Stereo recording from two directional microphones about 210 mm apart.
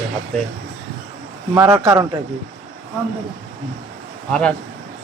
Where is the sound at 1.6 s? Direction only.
15° right (ahead or behind).